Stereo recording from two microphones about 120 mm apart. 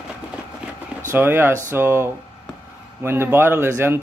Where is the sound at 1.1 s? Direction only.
20° right (ahead or behind).